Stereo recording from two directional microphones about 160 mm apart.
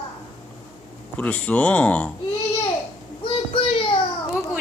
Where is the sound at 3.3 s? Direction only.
35° left (ahead or behind).